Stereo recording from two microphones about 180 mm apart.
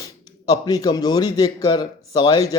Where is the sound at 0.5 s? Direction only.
20° left (ahead or behind).